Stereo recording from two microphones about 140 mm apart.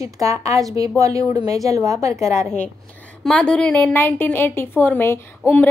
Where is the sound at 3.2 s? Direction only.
5° left (ahead or behind).